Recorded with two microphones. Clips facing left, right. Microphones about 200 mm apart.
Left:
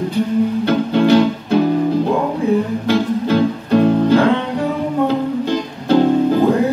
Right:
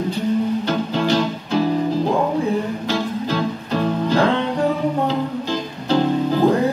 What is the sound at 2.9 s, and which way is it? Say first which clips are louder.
Music: left 8 dB; 55° left (ahead or behind).